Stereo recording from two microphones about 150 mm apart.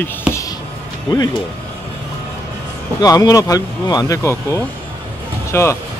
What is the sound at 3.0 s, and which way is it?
Speech, 25° left (ahead or behind).